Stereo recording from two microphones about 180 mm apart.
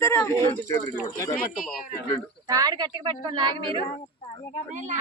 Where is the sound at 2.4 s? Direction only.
20° right (ahead or behind).